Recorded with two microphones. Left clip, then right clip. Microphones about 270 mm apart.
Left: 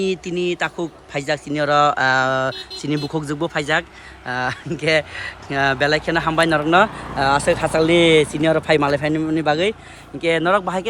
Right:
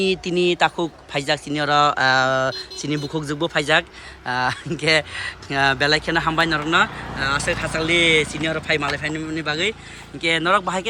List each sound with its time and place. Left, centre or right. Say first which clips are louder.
0.0 s a man's voice: right 2 dB; centre